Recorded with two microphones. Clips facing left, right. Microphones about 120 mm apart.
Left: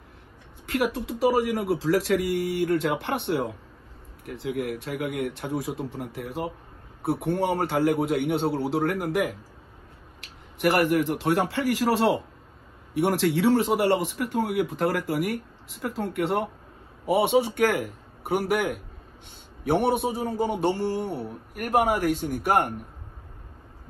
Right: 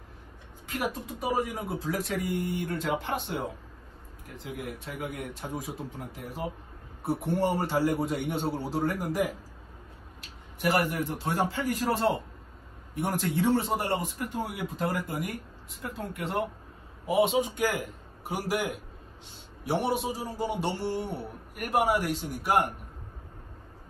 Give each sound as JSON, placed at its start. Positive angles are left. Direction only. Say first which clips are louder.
{"t": 0.7, "sound": "speech", "louder": "left 7 dB", "side_deg": 75}
{"t": 10.2, "sound": "a man's voice", "louder": "left 5 dB", "side_deg": 65}